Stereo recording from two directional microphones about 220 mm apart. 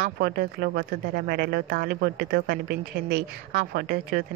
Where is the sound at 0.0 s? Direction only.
45° right (ahead or behind).